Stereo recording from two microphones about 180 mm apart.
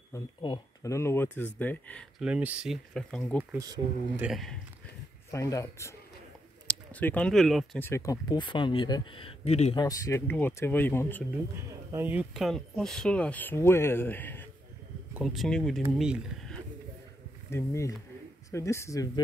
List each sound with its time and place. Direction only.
0.1 s speech: 20° left (ahead or behind)
2.2 s speech: 5° right (ahead or behind)
3.5 s speech: 20° right (ahead or behind)
4.2 s speech: centre (ahead or behind)
5.3 s speech: 15° left (ahead or behind); by 7.8 s centre (ahead or behind)
7.8 s speech: 15° left (ahead or behind); by 9.8 s 35° left (ahead or behind)
9.8 s speech: 20° left (ahead or behind)
11.9 s speech: 10° right (ahead or behind); by 14.4 s 10° left (ahead or behind)
15.1 s speech: centre (ahead or behind)
17.5 s speech: 15° left (ahead or behind)